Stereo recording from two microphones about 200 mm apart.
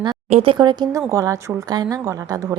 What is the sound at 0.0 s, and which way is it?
A woman's voice, 25° right (ahead or behind).